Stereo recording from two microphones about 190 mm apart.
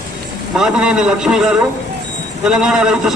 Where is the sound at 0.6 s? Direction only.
5° right (ahead or behind).